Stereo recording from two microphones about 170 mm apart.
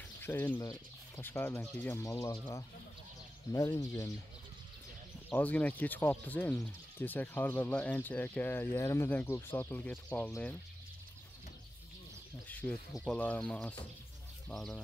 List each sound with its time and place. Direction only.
0.2 s speech: 10° left (ahead or behind)
3.5 s speech: 20° left (ahead or behind)
5.3 s speech: 10° left (ahead or behind)
12.4 s speech: 10° left (ahead or behind)